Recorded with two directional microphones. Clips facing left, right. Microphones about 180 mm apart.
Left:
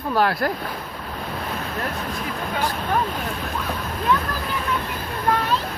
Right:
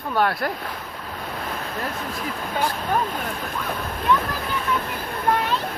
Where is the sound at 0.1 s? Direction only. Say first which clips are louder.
Left 2 dB; centre (ahead or behind).